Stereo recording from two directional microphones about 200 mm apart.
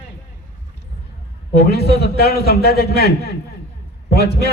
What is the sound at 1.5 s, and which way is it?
A man's voice, 55° left (ahead or behind).